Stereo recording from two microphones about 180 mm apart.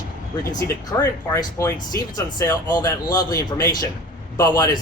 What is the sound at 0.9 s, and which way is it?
Speech, 20° left (ahead or behind).